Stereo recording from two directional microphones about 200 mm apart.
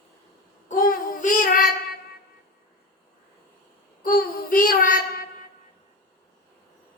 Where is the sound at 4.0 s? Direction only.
45° left (ahead or behind).